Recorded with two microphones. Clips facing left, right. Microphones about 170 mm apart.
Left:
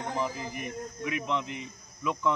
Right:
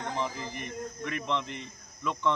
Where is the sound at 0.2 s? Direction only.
5° left (ahead or behind).